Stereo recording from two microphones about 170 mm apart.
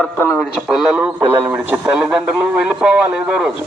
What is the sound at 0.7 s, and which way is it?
A man's voice, 5° right (ahead or behind).